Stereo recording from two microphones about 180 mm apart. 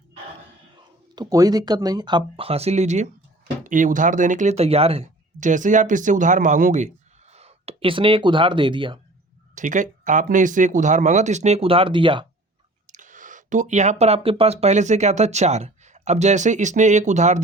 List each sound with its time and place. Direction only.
1.1 s speech: 20° right (ahead or behind)
9.6 s speech: 45° right (ahead or behind); by 12.2 s 30° right (ahead or behind)
12.9 s speech: 45° right (ahead or behind)